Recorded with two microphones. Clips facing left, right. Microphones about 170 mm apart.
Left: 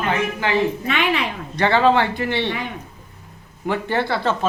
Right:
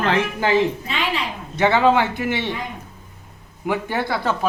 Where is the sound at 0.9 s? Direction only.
65° left (ahead or behind).